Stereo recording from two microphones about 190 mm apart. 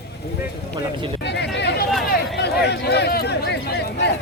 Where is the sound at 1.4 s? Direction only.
65° left (ahead or behind).